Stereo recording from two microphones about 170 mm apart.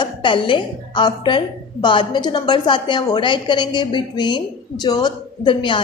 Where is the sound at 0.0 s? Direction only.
30° left (ahead or behind).